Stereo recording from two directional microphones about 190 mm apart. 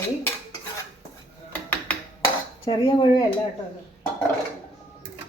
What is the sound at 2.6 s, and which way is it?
Speech, 25° left (ahead or behind).